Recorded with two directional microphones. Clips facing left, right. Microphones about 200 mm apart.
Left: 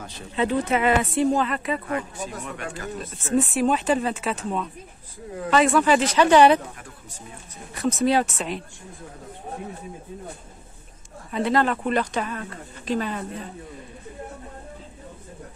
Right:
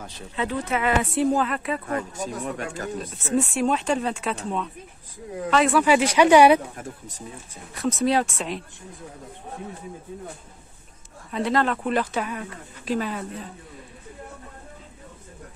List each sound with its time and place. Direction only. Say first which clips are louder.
0.4 s speech: left 4 dB; 25° left (ahead or behind)
1.1 s speech: even; centre (ahead or behind)
1.9 s speech: right 1 dB; 40° right (ahead or behind)
3.0 s speech: left 2 dB; centre (ahead or behind)
7.7 s speech: left 1 dB; centre (ahead or behind)
11.3 s speech: left 1 dB; centre (ahead or behind)